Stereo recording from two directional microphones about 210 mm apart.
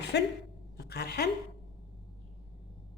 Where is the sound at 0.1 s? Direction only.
55° left (ahead or behind).